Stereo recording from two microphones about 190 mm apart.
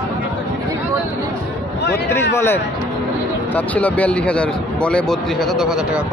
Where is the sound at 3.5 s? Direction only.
10° left (ahead or behind).